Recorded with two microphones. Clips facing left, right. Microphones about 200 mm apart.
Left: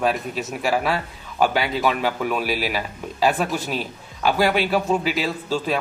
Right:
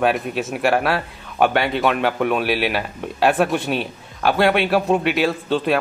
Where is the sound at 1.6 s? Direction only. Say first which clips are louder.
Right 3 dB; centre (ahead or behind).